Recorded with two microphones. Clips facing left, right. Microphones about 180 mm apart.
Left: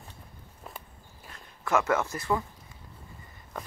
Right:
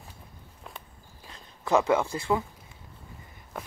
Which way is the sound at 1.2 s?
20° right (ahead or behind).